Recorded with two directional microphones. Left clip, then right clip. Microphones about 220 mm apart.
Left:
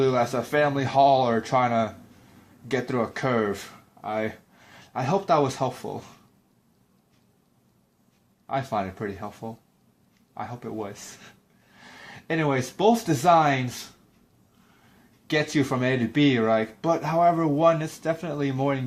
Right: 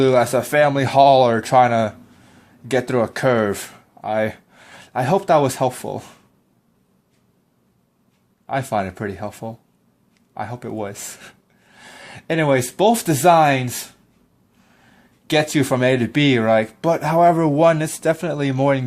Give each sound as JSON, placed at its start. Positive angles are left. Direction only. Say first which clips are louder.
{"t": 0.0, "sound": "speech", "louder": "right 7 dB", "side_deg": -45}
{"t": 8.4, "sound": "speech", "louder": "right 6 dB", "side_deg": -45}
{"t": 15.3, "sound": "speech", "louder": "right 7 dB", "side_deg": -45}